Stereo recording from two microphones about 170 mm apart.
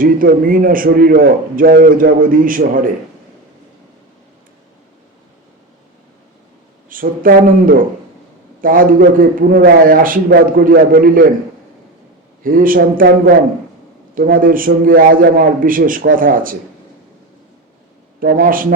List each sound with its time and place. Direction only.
0.0 s a man's voice: 55° right (ahead or behind)
6.9 s a man's voice: 55° right (ahead or behind)
12.4 s a man's voice: 55° right (ahead or behind)
18.2 s a man's voice: 60° right (ahead or behind)